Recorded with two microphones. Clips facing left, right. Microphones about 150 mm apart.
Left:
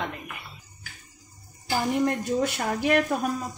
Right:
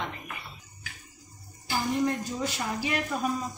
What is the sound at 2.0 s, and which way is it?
Speech, 60° left (ahead or behind).